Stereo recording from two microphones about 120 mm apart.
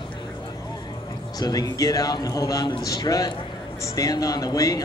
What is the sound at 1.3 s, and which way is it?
Speech, 35° left (ahead or behind).